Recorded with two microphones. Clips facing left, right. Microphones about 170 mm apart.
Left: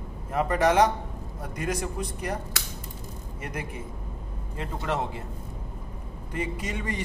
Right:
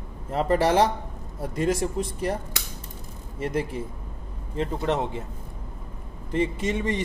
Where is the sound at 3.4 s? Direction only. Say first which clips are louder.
Right 9 dB; 30° right (ahead or behind).